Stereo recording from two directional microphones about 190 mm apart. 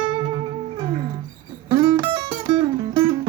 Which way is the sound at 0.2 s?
25° right (ahead or behind).